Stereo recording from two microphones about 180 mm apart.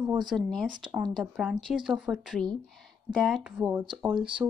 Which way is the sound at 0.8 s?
25° right (ahead or behind).